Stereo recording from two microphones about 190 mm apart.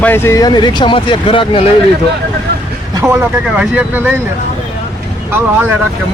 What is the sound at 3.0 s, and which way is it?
Speech, 5° right (ahead or behind).